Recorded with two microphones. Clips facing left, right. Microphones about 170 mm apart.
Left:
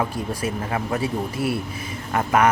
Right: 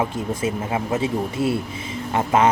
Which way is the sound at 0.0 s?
20° right (ahead or behind).